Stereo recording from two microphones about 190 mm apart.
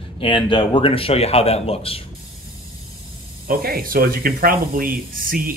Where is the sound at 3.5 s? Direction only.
50° right (ahead or behind).